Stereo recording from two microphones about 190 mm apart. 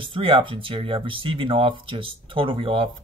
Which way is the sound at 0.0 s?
25° right (ahead or behind).